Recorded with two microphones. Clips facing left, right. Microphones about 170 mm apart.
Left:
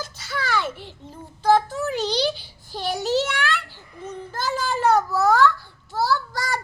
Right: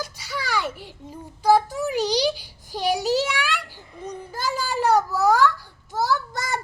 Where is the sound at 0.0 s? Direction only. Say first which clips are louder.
Left 1 dB; 10° right (ahead or behind).